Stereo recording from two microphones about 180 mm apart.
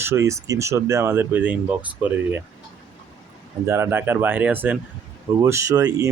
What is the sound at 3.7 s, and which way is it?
Speech, 15° right (ahead or behind).